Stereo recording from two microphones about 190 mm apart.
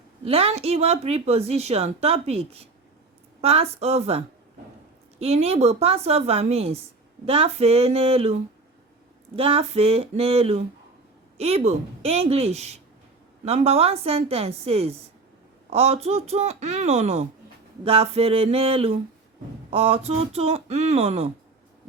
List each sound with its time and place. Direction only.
0.3 s speech: 30° right (ahead or behind)
5.2 s speech: 35° right (ahead or behind)